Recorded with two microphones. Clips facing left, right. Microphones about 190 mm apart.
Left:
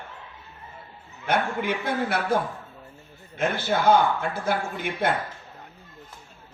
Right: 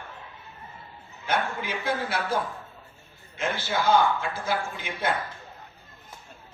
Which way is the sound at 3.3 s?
55° left (ahead or behind).